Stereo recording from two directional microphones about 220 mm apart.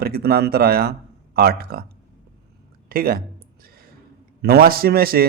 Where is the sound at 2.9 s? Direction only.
40° right (ahead or behind).